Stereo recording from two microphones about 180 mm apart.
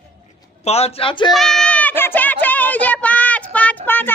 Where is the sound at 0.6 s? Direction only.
35° left (ahead or behind).